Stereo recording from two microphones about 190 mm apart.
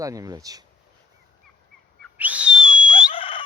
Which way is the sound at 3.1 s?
30° left (ahead or behind).